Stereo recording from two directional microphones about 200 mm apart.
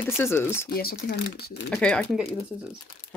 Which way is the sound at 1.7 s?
5° left (ahead or behind).